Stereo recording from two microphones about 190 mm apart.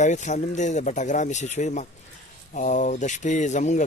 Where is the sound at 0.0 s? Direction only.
40° left (ahead or behind).